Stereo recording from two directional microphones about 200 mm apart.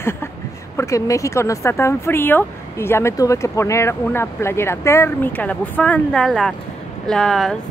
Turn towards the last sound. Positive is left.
turn(degrees=0)  # may be behind; listen again after turning